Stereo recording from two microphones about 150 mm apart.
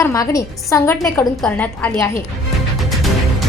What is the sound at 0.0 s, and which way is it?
A woman's voice, 20° left (ahead or behind).